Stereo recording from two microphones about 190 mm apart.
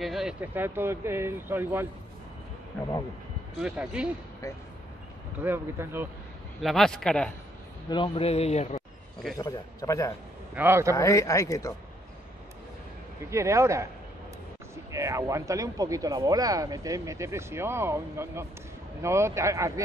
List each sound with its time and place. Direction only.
0.0 s speech: centre (ahead or behind)
3.6 s speech: 5° right (ahead or behind)
5.4 s speech: 10° right (ahead or behind)
6.6 s speech: centre (ahead or behind)
7.9 s a man's voice: 30° left (ahead or behind)
9.4 s speech: 15° left (ahead or behind)
10.5 s speech: 10° right (ahead or behind)
11.0 s speech: 15° left (ahead or behind)
13.3 s speech: 15° right (ahead or behind)
14.9 s speech: 15° right (ahead or behind)